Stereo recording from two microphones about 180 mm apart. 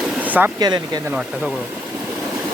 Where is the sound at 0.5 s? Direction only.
25° right (ahead or behind).